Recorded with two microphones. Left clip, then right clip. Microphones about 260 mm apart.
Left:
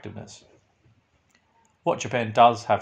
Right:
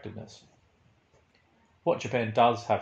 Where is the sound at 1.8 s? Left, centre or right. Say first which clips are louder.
Left 3 dB; left.